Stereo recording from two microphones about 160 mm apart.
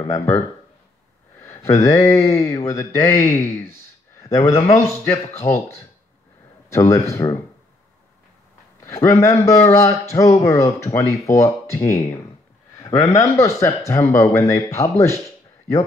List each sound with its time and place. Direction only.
0.0 s speech: 20° left (ahead or behind)
1.4 s a sound: 20° left (ahead or behind)
2.0 s speech: 20° left (ahead or behind)
6.7 s speech: 20° left (ahead or behind)
8.8 s a man's voice: 20° left (ahead or behind)